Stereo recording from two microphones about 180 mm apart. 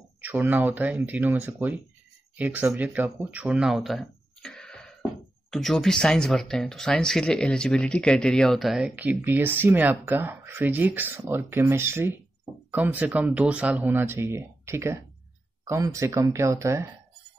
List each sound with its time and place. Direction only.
0.2 s speech: 10° right (ahead or behind)